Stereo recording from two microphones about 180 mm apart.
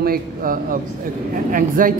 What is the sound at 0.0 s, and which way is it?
Speech, 55° right (ahead or behind).